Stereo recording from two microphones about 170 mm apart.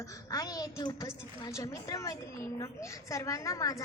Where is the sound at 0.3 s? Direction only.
20° left (ahead or behind).